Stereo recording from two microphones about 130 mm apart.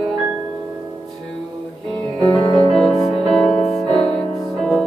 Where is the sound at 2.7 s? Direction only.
Centre (ahead or behind).